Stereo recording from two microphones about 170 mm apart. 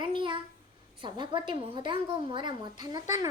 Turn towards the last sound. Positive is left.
turn(degrees=-20)  # may be behind; listen again after turning